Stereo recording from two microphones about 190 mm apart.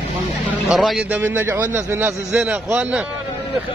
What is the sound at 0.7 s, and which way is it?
A man's voice, centre (ahead or behind).